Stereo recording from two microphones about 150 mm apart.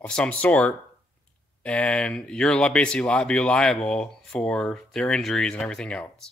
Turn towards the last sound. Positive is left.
turn(degrees=5)  # may be behind; listen again after turning